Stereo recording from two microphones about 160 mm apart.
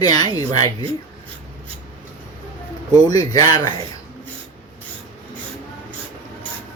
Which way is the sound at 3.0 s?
20° left (ahead or behind).